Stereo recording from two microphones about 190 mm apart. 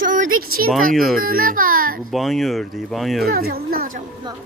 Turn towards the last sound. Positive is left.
turn(degrees=-50)  # may be behind; listen again after turning